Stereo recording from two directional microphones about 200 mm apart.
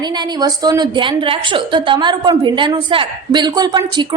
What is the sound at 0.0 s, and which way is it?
A woman's voice, 20° right (ahead or behind).